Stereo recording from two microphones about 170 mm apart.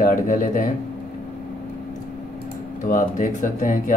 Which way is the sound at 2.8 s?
50° left (ahead or behind).